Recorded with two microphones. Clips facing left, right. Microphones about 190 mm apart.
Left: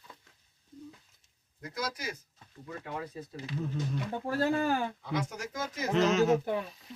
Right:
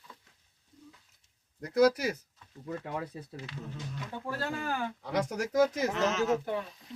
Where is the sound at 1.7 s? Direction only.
65° right (ahead or behind).